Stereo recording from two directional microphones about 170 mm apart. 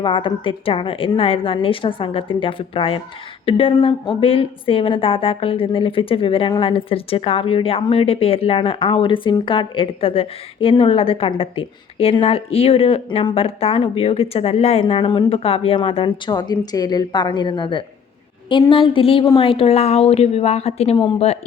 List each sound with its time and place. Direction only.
0.0 s a woman's voice: 30° left (ahead or behind)